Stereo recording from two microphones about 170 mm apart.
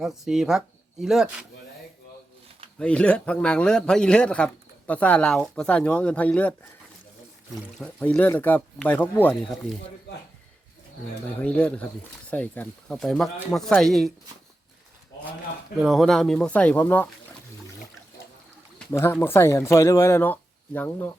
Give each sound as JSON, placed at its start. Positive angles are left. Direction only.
{"t": 0.0, "sound": "speech", "side_deg": 0}
{"t": 2.7, "sound": "a man's voice", "side_deg": 5}
{"t": 7.8, "sound": "a man's voice", "side_deg": 10}
{"t": 11.4, "sound": "a man's voice", "side_deg": 5}
{"t": 15.8, "sound": "speech", "side_deg": 0}
{"t": 18.9, "sound": "a man's voice", "side_deg": 15}